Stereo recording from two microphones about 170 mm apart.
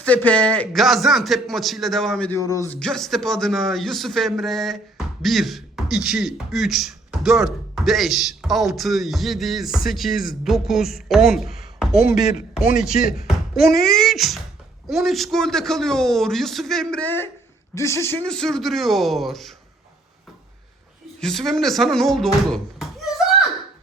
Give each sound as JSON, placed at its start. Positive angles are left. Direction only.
{"t": 0.0, "sound": "a man's voice", "side_deg": 10}
{"t": 2.5, "sound": "speech", "side_deg": 20}
{"t": 2.7, "sound": "a man's voice", "side_deg": 5}
{"t": 13.2, "sound": "a sound", "side_deg": 0}
{"t": 13.7, "sound": "speech", "side_deg": 65}
{"t": 13.9, "sound": "a man's voice", "side_deg": 0}
{"t": 18.3, "sound": "a man's voice", "side_deg": 5}
{"t": 21.2, "sound": "speech", "side_deg": 0}